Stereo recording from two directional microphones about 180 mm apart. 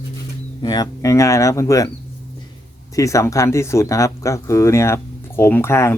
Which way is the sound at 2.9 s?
15° left (ahead or behind).